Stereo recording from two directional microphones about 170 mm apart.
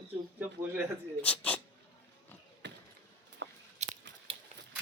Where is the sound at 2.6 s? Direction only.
90° right.